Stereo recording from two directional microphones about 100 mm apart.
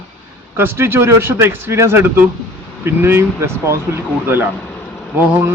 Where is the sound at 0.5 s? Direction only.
25° right (ahead or behind).